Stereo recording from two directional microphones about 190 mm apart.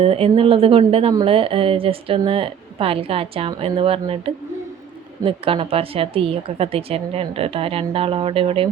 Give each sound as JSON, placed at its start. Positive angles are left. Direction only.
{"t": 0.0, "sound": "a woman's voice", "side_deg": -30}
{"t": 5.2, "sound": "a woman's voice", "side_deg": -30}